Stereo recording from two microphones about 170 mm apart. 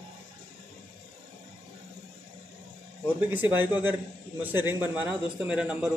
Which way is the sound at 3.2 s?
10° right (ahead or behind).